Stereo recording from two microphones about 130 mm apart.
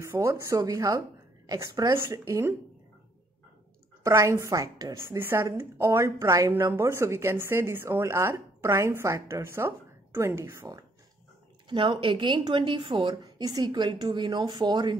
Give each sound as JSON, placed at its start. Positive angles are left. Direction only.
{"t": 0.0, "sound": "speech", "side_deg": -20}
{"t": 4.0, "sound": "speech", "side_deg": -25}
{"t": 11.7, "sound": "a woman's voice", "side_deg": -40}